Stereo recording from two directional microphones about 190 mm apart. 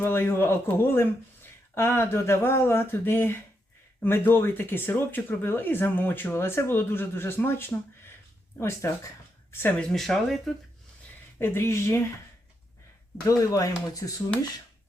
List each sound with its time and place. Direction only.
0.0 s speech: 10° left (ahead or behind)
11.3 s speech: 10° left (ahead or behind)
13.2 s speech: 15° left (ahead or behind)